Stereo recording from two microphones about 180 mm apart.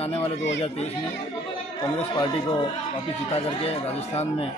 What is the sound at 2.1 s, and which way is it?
Speech, 25° left (ahead or behind).